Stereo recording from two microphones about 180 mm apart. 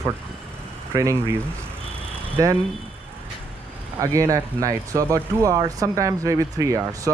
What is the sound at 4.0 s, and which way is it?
Speech, 15° right (ahead or behind).